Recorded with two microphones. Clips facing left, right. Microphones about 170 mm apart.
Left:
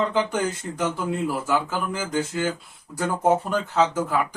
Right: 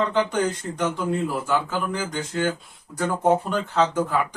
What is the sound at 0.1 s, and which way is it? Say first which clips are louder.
Speech: right 1 dB; 5° left (ahead or behind).